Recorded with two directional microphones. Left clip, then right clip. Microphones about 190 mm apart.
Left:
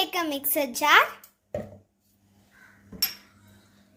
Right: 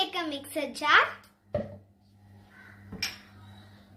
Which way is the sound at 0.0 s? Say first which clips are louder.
Left 4 dB; 75° left (ahead or behind).